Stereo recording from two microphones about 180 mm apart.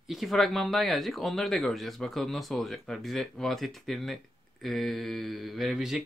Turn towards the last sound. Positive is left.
turn(degrees=0)  # may be behind; listen again after turning